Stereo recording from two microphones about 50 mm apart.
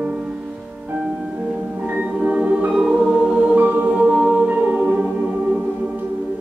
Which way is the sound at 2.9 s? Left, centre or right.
Centre.